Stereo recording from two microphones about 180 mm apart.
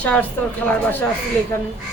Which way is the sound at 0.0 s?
10° left (ahead or behind).